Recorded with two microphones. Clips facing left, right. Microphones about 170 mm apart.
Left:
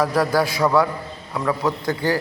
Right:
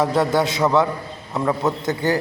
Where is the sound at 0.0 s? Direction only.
25° right (ahead or behind).